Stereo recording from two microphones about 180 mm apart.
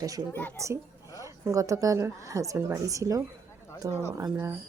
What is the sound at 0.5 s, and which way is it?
A woman's voice, 15° right (ahead or behind).